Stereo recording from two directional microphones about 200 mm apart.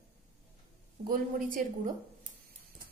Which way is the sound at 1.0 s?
45° right (ahead or behind).